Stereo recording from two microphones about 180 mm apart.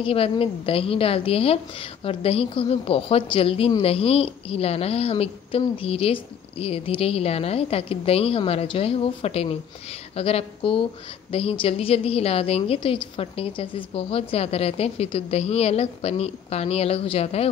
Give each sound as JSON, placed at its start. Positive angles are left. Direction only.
{"t": 0.0, "sound": "a woman's voice", "side_deg": 30}